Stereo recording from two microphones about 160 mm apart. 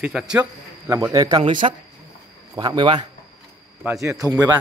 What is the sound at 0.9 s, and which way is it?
A man's voice, 20° right (ahead or behind).